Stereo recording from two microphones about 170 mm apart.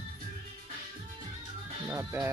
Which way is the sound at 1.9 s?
20° right (ahead or behind).